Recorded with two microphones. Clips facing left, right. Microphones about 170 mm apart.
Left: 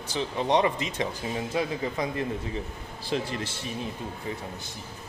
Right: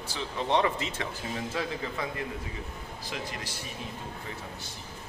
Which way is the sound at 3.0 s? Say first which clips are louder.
Left 8 dB; 30° left (ahead or behind).